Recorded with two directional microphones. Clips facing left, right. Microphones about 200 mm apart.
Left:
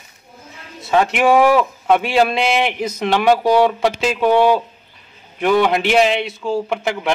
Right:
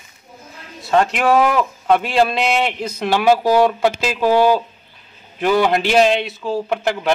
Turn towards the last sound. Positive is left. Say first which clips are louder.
# right 1 dB
turn(degrees=0)  # may be behind; listen again after turning